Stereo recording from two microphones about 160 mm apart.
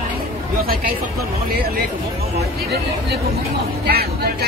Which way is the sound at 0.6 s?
70° right (ahead or behind).